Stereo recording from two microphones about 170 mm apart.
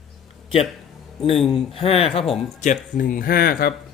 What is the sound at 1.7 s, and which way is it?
Speech, 35° left (ahead or behind).